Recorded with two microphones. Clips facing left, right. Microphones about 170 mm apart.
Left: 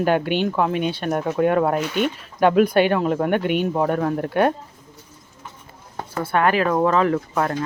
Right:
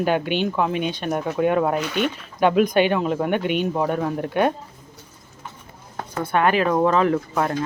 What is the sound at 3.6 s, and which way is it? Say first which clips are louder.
Speech: left 2 dB; centre (ahead or behind).